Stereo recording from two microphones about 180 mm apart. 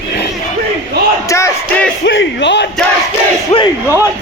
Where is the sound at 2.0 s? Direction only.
80° left.